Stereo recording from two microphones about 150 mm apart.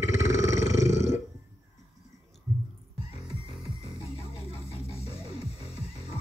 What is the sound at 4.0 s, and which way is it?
Music, 40° left (ahead or behind).